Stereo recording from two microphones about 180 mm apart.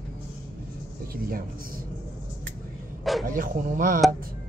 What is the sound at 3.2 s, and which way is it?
Speech, 50° right (ahead or behind).